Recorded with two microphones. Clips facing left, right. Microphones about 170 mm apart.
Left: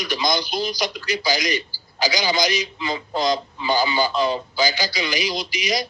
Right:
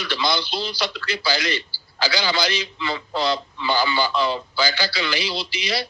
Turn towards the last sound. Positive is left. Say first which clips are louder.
# left 2 dB
turn(degrees=15)  # may be behind; listen again after turning